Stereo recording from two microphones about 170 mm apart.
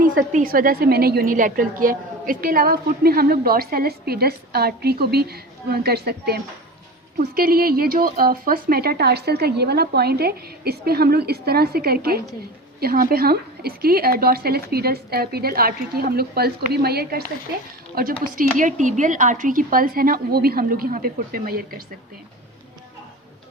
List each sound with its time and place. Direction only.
0.0 s a woman's voice: 55° right (ahead or behind)
18.3 s a woman's voice: 50° right (ahead or behind)